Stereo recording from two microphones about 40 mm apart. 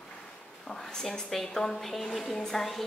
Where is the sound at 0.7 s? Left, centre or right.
Centre.